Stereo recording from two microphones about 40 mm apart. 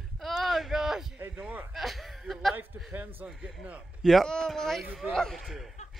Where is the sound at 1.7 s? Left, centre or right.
Centre.